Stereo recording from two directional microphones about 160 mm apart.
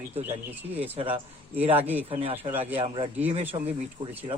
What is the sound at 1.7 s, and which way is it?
Speech, 10° right (ahead or behind).